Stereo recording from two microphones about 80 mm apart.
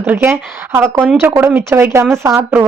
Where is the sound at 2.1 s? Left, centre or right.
Right.